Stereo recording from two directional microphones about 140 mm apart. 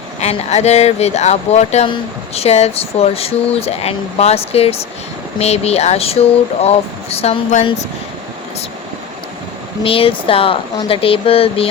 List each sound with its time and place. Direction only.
0.2 s speech: 50° left (ahead or behind)
9.8 s speech: 40° left (ahead or behind)